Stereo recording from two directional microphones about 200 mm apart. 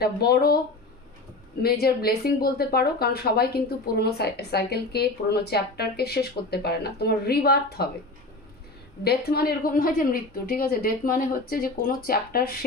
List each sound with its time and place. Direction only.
0.0 s a woman's voice: 50° left (ahead or behind)
1.6 s a woman's voice: 50° left (ahead or behind)
9.0 s a woman's voice: 50° left (ahead or behind)